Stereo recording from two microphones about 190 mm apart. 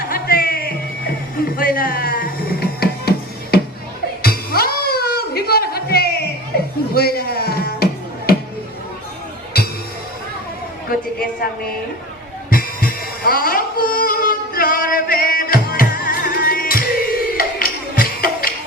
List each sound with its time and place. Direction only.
0.1 s music: 50° left (ahead or behind)
6.9 s a sound: 55° left (ahead or behind)
9.5 s music: 55° left (ahead or behind)
12.5 s music: 50° left (ahead or behind)